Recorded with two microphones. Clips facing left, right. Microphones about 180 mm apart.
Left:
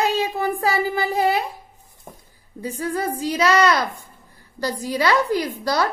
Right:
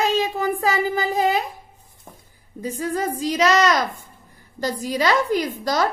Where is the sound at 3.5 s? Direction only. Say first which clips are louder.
Left 1 dB; 40° right (ahead or behind).